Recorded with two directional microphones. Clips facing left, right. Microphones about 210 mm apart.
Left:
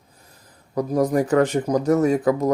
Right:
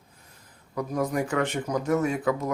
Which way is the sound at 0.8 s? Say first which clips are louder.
Left 7 dB; 40° left (ahead or behind).